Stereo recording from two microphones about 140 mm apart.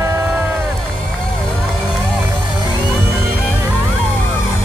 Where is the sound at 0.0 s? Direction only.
20° right (ahead or behind).